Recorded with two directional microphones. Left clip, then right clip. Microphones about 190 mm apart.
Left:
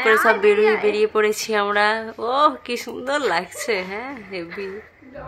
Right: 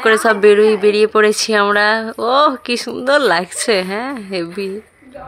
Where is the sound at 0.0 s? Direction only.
25° right (ahead or behind).